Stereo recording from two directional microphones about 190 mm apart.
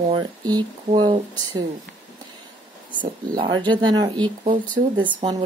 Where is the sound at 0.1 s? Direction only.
20° right (ahead or behind).